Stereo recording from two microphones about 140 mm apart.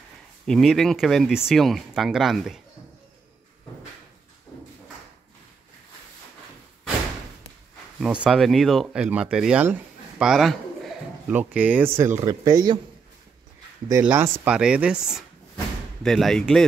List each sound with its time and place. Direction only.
0.5 s speech: centre (ahead or behind)
8.0 s speech: 5° right (ahead or behind)
11.2 s speech: 10° right (ahead or behind)
14.0 s speech: 15° right (ahead or behind); by 16.6 s centre (ahead or behind)